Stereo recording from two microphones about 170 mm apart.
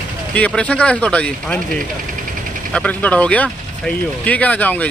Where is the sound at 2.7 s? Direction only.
10° left (ahead or behind).